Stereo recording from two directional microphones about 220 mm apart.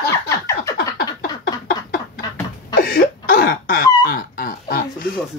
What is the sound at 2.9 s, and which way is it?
Cough, 45° left (ahead or behind).